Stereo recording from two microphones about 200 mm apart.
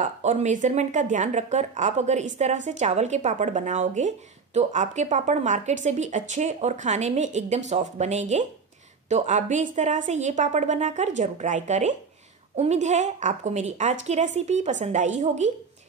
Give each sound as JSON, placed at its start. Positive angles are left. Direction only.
{"t": 0.0, "sound": "a woman's voice", "side_deg": -35}